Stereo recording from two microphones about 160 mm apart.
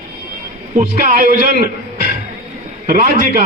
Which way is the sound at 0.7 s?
60° right (ahead or behind).